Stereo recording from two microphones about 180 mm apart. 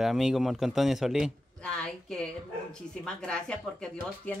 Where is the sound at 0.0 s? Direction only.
Centre (ahead or behind).